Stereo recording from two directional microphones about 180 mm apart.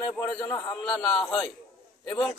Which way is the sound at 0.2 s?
15° left (ahead or behind).